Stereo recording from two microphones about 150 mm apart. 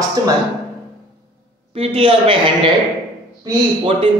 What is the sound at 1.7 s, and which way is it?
Speech, 40° right (ahead or behind).